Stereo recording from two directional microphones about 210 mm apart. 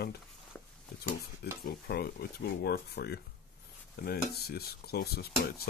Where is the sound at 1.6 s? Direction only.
50° left (ahead or behind).